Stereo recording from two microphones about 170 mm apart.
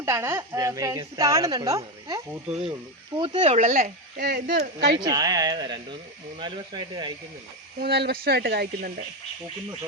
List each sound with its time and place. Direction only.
0.0 s speech: 15° right (ahead or behind)
3.2 s speech: 30° right (ahead or behind); by 4.9 s 65° right (ahead or behind)
4.9 s speech: 25° right (ahead or behind)
7.8 s speech: 70° right (ahead or behind)